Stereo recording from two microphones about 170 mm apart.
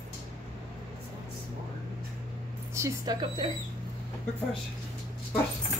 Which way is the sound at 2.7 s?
20° right (ahead or behind).